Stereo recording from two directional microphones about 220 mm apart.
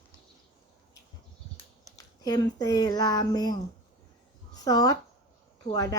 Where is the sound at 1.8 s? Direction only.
15° left (ahead or behind).